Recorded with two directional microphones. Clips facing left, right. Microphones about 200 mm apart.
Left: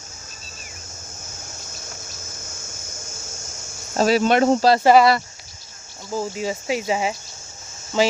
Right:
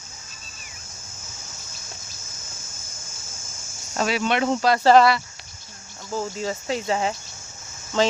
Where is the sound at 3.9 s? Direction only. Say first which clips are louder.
Left 6 dB; 40° left (ahead or behind).